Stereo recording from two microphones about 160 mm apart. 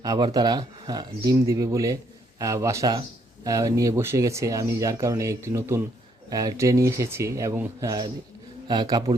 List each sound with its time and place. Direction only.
0.0 s speech: 25° right (ahead or behind)